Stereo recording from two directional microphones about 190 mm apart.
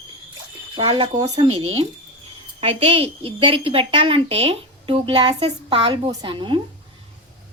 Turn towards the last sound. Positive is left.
turn(degrees=-25)  # may be behind; listen again after turning